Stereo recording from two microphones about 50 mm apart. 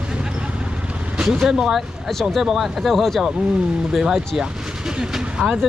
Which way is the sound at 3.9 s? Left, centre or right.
Centre.